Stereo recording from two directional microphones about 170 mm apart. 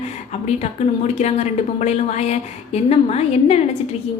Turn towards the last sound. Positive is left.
turn(degrees=35)  # may be behind; listen again after turning